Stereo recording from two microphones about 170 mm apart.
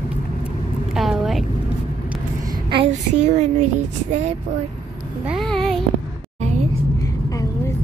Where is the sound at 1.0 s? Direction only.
Centre (ahead or behind).